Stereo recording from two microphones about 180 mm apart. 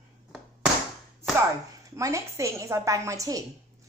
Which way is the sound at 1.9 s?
15° right (ahead or behind).